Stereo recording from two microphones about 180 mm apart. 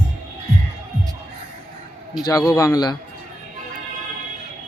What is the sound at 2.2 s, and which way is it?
Speech, 20° left (ahead or behind).